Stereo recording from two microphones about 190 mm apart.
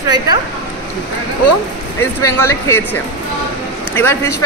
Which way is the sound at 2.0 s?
15° left (ahead or behind).